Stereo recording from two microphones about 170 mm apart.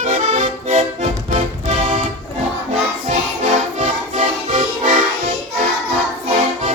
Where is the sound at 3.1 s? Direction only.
45° right (ahead or behind).